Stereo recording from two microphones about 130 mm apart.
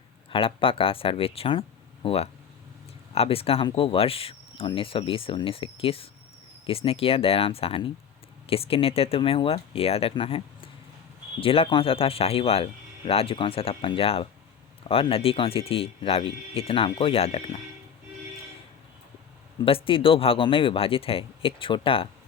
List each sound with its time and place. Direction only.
0.3 s speech: 45° left (ahead or behind)
19.6 s speech: 45° left (ahead or behind)